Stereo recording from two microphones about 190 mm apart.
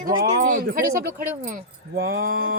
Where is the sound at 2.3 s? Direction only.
90° right.